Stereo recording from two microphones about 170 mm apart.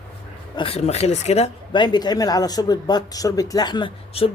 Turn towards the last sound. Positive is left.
turn(degrees=30)  # may be behind; listen again after turning